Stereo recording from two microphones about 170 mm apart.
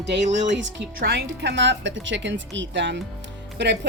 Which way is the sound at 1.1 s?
75° right (ahead or behind).